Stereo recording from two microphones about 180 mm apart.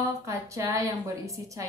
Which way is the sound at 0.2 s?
15° right (ahead or behind).